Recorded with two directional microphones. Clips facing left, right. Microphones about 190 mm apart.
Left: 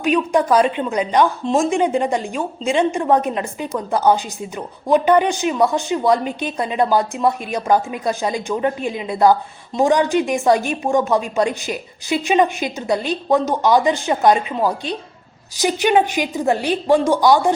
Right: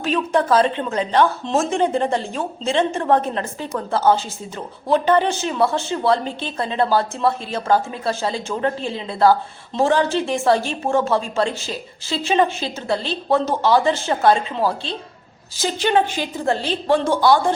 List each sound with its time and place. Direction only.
0.0 s a woman's voice: 15° left (ahead or behind)